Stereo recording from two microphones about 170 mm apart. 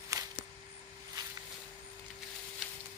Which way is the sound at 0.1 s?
20° right (ahead or behind).